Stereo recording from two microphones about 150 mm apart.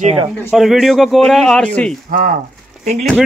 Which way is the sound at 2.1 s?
65° right (ahead or behind).